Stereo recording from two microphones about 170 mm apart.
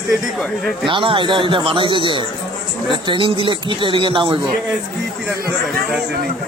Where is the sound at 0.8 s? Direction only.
30° right (ahead or behind).